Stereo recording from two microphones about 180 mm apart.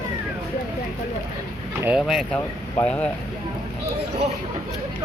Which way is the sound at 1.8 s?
5° right (ahead or behind).